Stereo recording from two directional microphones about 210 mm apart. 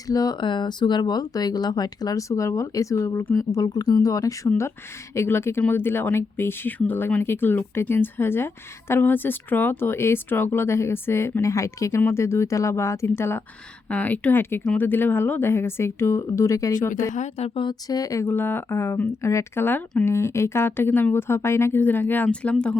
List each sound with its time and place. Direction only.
0.1 s speech: 15° left (ahead or behind)
17.2 s speech: 30° left (ahead or behind); by 22.8 s 5° left (ahead or behind)